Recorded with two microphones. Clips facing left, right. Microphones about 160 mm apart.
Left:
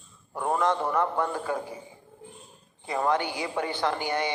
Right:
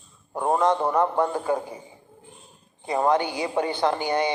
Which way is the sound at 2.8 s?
25° right (ahead or behind).